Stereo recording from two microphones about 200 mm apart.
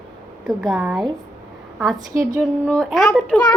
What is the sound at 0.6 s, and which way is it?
Speech, 5° right (ahead or behind).